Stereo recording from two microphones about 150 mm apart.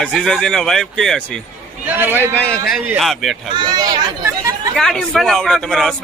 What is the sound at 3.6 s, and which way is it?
Speech, 30° right (ahead or behind).